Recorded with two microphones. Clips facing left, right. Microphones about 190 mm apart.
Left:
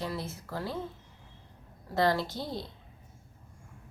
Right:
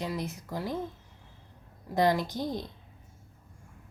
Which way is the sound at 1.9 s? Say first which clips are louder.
Right 2 dB; 15° right (ahead or behind).